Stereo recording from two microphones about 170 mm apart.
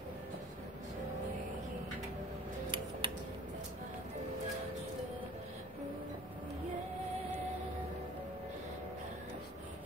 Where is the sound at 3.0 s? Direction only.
30° right (ahead or behind).